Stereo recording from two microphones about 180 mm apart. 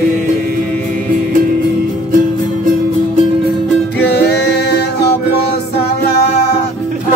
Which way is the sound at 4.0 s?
65° left (ahead or behind).